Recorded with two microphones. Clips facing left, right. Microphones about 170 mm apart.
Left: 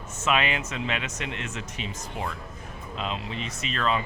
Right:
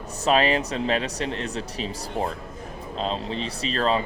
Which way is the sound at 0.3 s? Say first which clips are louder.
Right 5 dB; 35° right (ahead or behind).